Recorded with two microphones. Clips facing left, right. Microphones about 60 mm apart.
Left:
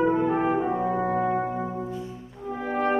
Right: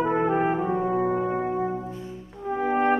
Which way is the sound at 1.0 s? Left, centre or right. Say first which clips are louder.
Right 1 dB; left.